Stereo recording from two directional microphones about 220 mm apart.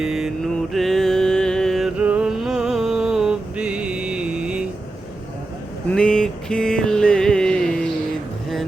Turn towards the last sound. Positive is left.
turn(degrees=5)  # may be behind; listen again after turning